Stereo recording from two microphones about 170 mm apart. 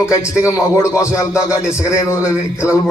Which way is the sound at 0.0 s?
15° left (ahead or behind).